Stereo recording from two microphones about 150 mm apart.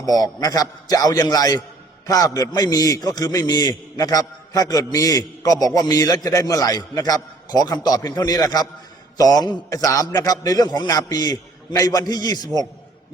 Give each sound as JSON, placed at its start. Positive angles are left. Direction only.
{"t": 0.0, "sound": "a man's voice", "side_deg": 25}